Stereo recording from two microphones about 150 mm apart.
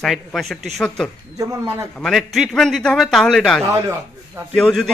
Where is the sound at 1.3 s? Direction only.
20° right (ahead or behind).